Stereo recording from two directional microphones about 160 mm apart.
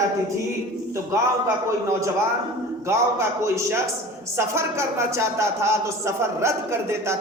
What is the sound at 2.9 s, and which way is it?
A man's voice, 15° right (ahead or behind).